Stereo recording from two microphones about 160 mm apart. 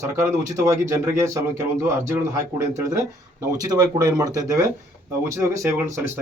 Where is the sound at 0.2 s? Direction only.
20° right (ahead or behind).